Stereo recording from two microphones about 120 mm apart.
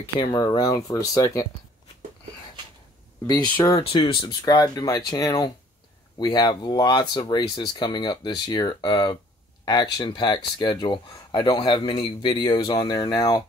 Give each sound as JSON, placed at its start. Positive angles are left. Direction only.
{"t": 0.2, "sound": "speech", "side_deg": 35}
{"t": 3.8, "sound": "speech", "side_deg": 50}
{"t": 4.3, "sound": "speech", "side_deg": 30}